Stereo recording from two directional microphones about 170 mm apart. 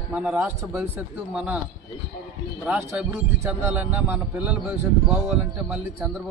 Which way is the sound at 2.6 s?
10° right (ahead or behind).